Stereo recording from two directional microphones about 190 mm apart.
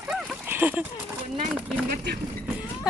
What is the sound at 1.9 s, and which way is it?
Speech, 55° right (ahead or behind).